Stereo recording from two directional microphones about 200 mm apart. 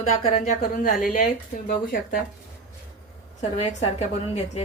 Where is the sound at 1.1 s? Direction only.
45° left (ahead or behind).